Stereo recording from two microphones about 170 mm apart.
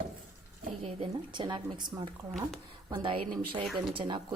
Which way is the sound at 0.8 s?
30° right (ahead or behind).